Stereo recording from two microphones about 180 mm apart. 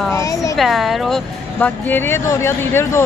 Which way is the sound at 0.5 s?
Centre (ahead or behind).